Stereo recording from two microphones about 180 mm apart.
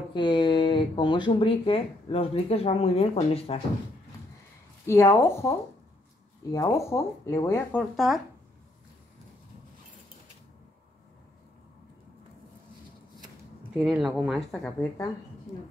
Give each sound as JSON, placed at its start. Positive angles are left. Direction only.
{"t": 0.1, "sound": "speech", "side_deg": 25}
{"t": 4.8, "sound": "speech", "side_deg": 15}
{"t": 7.9, "sound": "speech", "side_deg": 0}
{"t": 13.7, "sound": "speech", "side_deg": 0}